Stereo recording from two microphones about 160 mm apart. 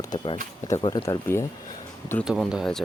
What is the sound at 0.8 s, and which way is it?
Speech, 25° left (ahead or behind).